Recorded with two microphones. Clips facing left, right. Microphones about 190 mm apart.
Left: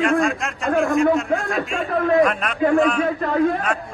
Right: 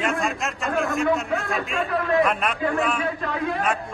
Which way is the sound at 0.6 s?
50° left (ahead or behind).